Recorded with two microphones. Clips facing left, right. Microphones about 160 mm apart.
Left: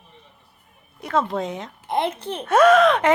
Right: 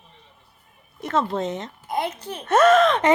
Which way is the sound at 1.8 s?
30° left (ahead or behind).